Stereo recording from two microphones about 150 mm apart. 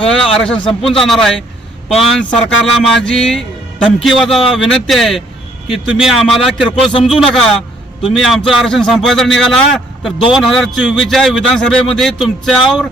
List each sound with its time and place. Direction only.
0.0 s a man's voice: 5° left (ahead or behind)
0.6 s a man's voice: 30° left (ahead or behind)
0.9 s a man's voice: centre (ahead or behind)